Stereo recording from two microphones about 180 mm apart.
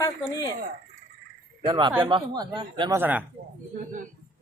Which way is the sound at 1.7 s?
25° right (ahead or behind).